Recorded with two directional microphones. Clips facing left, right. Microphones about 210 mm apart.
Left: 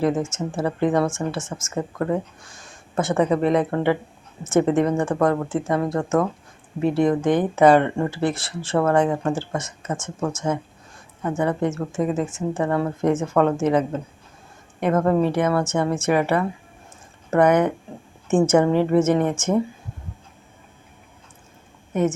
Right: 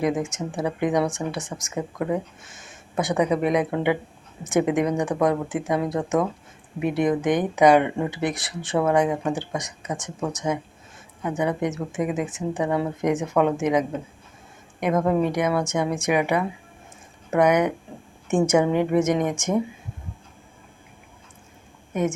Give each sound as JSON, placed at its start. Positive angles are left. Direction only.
{"t": 0.0, "sound": "speech", "side_deg": -15}
{"t": 21.9, "sound": "speech", "side_deg": -10}